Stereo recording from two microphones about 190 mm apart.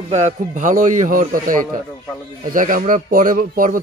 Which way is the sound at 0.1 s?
40° right (ahead or behind).